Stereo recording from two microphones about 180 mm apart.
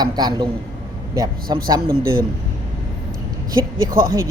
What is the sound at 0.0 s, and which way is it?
A man's voice, 25° right (ahead or behind).